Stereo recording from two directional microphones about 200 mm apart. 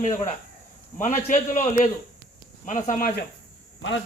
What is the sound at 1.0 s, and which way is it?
A man's voice, 40° left (ahead or behind).